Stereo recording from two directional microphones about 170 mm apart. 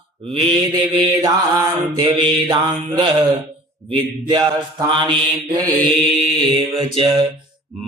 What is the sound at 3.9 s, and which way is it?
Mantra, 25° right (ahead or behind).